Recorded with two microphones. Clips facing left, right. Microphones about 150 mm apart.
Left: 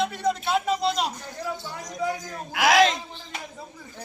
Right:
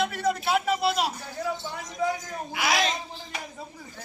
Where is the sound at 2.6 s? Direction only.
90° left.